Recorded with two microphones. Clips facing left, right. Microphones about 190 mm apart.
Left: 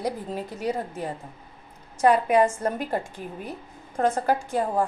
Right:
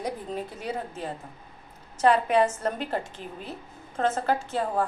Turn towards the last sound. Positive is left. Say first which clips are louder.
# left 2 dB
turn(degrees=15)  # may be behind; listen again after turning